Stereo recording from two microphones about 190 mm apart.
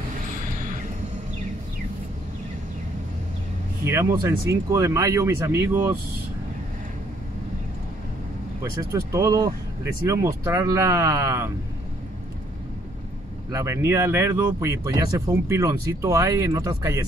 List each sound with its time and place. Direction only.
3.8 s speech: 15° right (ahead or behind)
9.1 s speech: 20° right (ahead or behind)
13.5 s speech: 15° right (ahead or behind)